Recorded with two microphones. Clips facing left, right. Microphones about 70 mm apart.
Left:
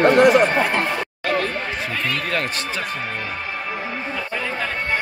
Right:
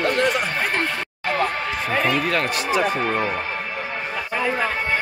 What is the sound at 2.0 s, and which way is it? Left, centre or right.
Speech, centre.